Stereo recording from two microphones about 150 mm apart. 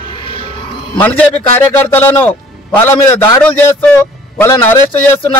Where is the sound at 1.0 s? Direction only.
10° left (ahead or behind).